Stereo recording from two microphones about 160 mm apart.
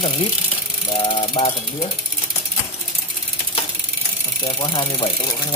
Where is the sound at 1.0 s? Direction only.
30° left (ahead or behind).